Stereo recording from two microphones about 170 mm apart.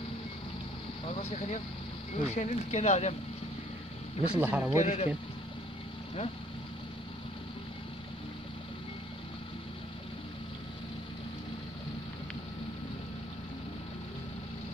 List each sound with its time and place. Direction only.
1.0 s vehicle: 35° left (ahead or behind)
2.2 s speech: 40° left (ahead or behind)
4.4 s speech: 10° right (ahead or behind)
4.7 s speech: 40° left (ahead or behind)